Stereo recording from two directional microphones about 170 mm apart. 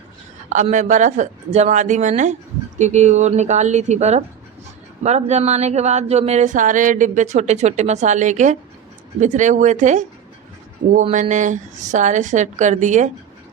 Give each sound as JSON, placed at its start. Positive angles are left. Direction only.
{"t": 0.5, "sound": "a woman's voice", "side_deg": -45}
{"t": 11.1, "sound": "a woman's voice", "side_deg": -45}